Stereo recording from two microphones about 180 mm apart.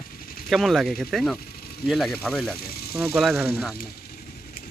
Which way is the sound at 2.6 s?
60° left (ahead or behind).